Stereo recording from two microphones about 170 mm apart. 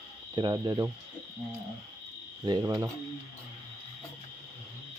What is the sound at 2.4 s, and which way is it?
Speech, 25° right (ahead or behind).